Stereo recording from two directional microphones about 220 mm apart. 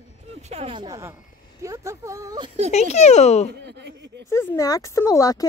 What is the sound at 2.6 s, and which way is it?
Speech, 30° left (ahead or behind).